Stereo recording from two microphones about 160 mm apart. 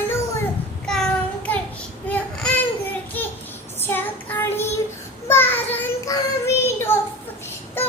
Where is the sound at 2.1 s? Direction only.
5° left (ahead or behind).